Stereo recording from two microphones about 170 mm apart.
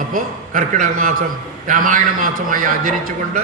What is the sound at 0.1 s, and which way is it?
A man's voice, 50° right (ahead or behind).